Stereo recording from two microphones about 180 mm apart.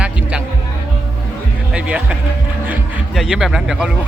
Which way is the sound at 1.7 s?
5° right (ahead or behind).